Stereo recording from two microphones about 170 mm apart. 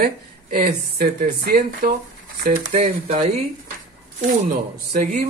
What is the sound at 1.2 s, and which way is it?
Speech, 55° right (ahead or behind).